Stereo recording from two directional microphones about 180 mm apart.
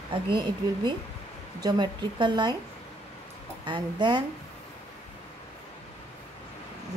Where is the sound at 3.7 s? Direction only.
25° right (ahead or behind).